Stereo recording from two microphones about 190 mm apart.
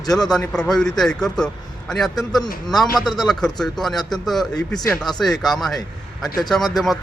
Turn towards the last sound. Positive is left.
turn(degrees=0)  # may be behind; listen again after turning